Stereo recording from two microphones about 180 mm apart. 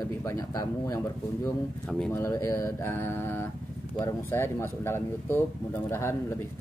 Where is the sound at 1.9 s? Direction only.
5° left (ahead or behind).